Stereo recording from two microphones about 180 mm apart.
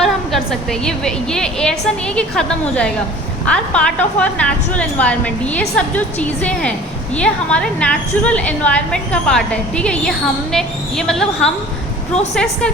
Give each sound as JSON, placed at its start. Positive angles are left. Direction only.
{"t": 0.0, "sound": "a woman's voice", "side_deg": 0}